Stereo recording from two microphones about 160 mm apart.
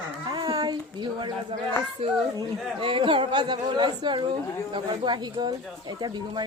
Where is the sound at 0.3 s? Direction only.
25° right (ahead or behind).